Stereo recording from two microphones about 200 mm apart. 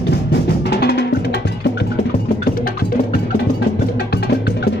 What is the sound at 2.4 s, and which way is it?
Music, 50° left (ahead or behind).